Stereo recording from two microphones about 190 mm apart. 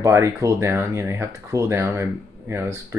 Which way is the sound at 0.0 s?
15° right (ahead or behind).